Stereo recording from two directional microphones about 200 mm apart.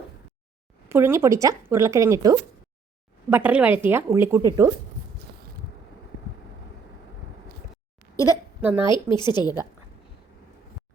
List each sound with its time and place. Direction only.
0.9 s speech: 15° right (ahead or behind)
8.6 s speech: 10° right (ahead or behind)
8.9 s a woman's voice: 20° left (ahead or behind)